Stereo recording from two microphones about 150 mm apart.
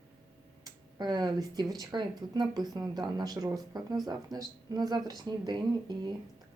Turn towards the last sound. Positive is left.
turn(degrees=-30)  # may be behind; listen again after turning